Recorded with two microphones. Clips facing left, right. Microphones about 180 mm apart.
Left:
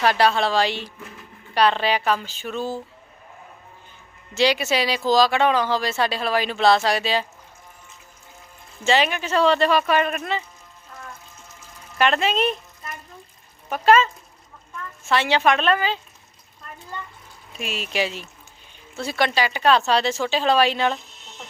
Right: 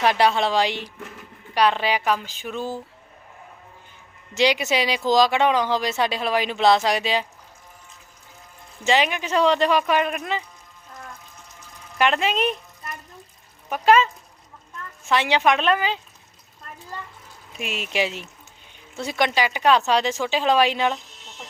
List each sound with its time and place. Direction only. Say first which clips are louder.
0.0 s a woman's voice: even; 20° right (ahead or behind)
4.4 s speech: even; 20° right (ahead or behind)
8.8 s speech: left 1 dB; 15° right (ahead or behind)
11.9 s speech: left 1 dB; 15° right (ahead or behind)
17.6 s a woman's voice: even; 20° right (ahead or behind)